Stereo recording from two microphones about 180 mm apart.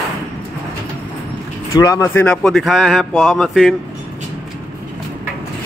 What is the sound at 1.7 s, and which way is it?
Speech, 20° left (ahead or behind).